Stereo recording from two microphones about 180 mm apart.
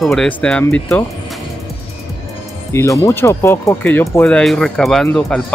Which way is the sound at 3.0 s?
15° left (ahead or behind).